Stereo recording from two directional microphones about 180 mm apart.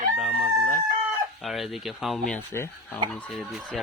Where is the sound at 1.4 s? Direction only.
Centre (ahead or behind).